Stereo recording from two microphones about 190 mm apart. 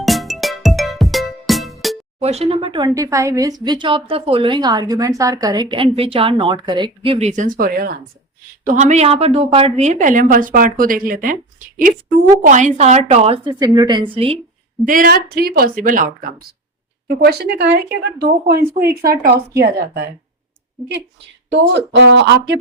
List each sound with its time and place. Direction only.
0.0 s music: centre (ahead or behind)
2.1 s speech: 35° right (ahead or behind); by 7.9 s 50° right (ahead or behind)
8.6 s a woman's voice: 40° right (ahead or behind)
14.8 s a woman's voice: 50° right (ahead or behind)
17.2 s a woman's voice: 55° right (ahead or behind)
21.5 s speech: 65° right (ahead or behind)